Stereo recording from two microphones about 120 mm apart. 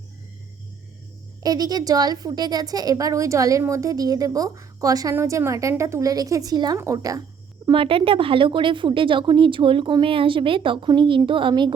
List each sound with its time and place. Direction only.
1.4 s a woman's voice: 35° right (ahead or behind)
7.7 s speech: 50° right (ahead or behind)